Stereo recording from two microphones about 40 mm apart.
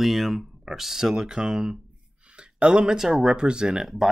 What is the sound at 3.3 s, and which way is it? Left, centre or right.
Speech, right.